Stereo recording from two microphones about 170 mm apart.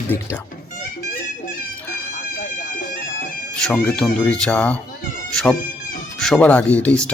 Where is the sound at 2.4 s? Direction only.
55° left (ahead or behind).